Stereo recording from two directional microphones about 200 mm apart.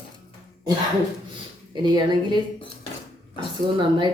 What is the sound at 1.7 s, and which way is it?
Speech, 20° right (ahead or behind).